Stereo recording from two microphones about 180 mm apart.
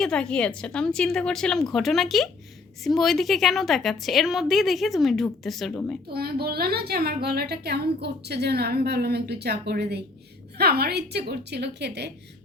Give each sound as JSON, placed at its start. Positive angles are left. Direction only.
{"t": 0.0, "sound": "a woman's voice", "side_deg": 5}
{"t": 6.1, "sound": "a woman's voice", "side_deg": -60}